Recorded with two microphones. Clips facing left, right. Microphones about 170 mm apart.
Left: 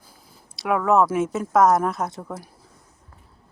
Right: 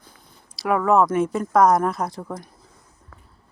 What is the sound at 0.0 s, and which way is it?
Speech, 5° left (ahead or behind).